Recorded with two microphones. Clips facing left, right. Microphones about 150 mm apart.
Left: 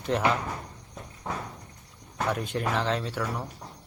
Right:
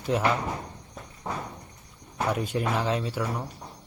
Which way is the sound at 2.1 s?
10° right (ahead or behind).